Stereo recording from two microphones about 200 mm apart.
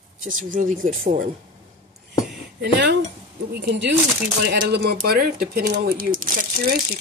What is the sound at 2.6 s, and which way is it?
Speech, 55° right (ahead or behind).